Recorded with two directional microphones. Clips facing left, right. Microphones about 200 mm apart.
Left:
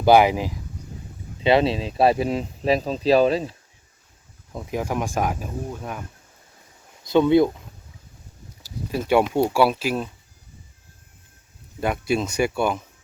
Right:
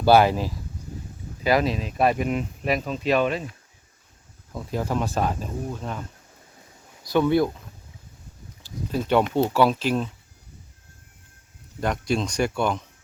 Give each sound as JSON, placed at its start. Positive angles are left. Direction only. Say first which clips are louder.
{"t": 0.0, "sound": "speech", "louder": "left 2 dB", "side_deg": 15}
{"t": 1.5, "sound": "speech", "louder": "left 3 dB", "side_deg": 30}
{"t": 4.5, "sound": "speech", "louder": "even", "side_deg": 15}
{"t": 7.0, "sound": "speech", "louder": "left 4 dB", "side_deg": 20}
{"t": 8.9, "sound": "speech", "louder": "left 2 dB", "side_deg": 10}
{"t": 11.8, "sound": "speech", "louder": "left 2 dB", "side_deg": 5}